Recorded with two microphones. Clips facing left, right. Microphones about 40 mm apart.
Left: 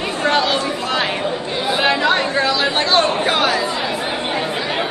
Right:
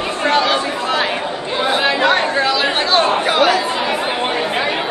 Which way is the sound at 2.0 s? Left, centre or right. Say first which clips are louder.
Right 2 dB; right.